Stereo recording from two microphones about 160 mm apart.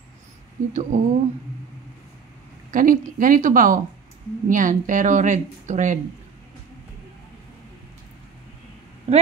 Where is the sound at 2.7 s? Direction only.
55° right (ahead or behind).